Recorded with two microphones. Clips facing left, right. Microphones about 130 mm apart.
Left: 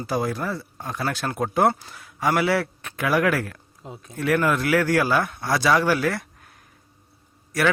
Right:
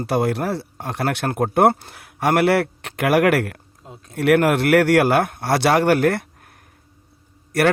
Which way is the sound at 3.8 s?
5° left (ahead or behind).